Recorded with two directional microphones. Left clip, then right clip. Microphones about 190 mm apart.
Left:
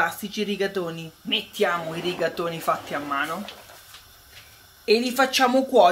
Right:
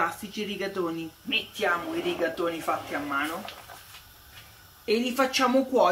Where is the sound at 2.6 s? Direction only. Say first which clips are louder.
Left 4 dB; 55° left (ahead or behind).